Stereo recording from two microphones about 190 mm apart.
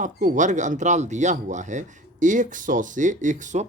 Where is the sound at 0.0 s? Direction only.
45° right (ahead or behind).